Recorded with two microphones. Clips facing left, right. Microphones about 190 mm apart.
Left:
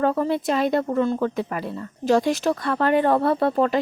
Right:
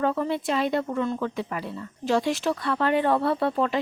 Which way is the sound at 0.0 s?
40° left (ahead or behind).